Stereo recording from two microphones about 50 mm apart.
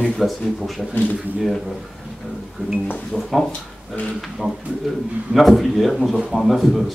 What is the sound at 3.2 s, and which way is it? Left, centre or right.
Speech, centre.